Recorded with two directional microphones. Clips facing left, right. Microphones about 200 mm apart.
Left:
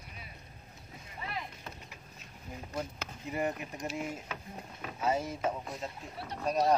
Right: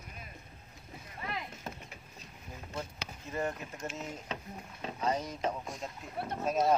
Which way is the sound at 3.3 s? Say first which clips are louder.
Left 2 dB; 15° left (ahead or behind).